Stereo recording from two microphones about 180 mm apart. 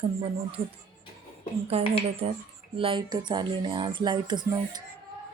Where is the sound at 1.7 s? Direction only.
35° right (ahead or behind).